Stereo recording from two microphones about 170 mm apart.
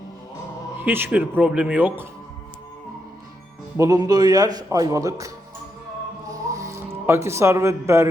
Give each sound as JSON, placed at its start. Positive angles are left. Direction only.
{"t": 0.8, "sound": "speech", "side_deg": -10}
{"t": 3.8, "sound": "a man's voice", "side_deg": -20}
{"t": 6.2, "sound": "music", "side_deg": -20}